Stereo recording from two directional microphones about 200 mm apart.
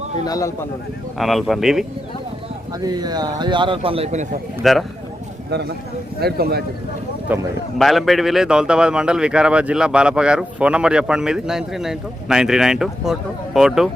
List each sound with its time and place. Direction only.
0.3 s a man's voice: 15° left (ahead or behind)
1.2 s a man's voice: centre (ahead or behind)
2.8 s a man's voice: 20° right (ahead or behind)
4.6 s a man's voice: centre (ahead or behind)
5.5 s speech: 55° right (ahead or behind)
7.3 s a man's voice: 10° right (ahead or behind)